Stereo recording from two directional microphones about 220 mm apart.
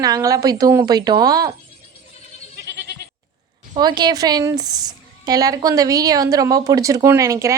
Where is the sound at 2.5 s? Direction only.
45° right (ahead or behind).